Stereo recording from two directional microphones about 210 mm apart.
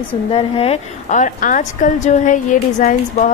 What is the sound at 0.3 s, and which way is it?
A woman's voice, 25° left (ahead or behind).